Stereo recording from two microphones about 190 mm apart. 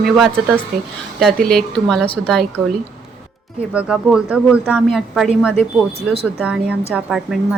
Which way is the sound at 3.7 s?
5° right (ahead or behind).